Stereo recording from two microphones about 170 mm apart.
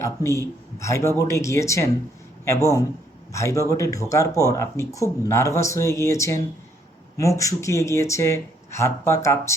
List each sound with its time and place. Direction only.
0.0 s speech: 15° left (ahead or behind)